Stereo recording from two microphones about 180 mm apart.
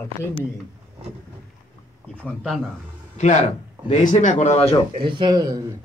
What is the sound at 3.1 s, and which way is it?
Speech, 40° left (ahead or behind).